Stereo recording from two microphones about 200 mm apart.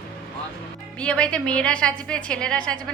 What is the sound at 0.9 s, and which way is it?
A woman's voice, 5° left (ahead or behind).